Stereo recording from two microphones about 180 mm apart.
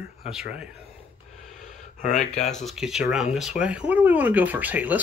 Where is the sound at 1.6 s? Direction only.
45° left (ahead or behind).